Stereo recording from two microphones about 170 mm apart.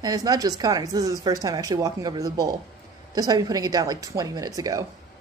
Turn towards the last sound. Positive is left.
turn(degrees=-20)  # may be behind; listen again after turning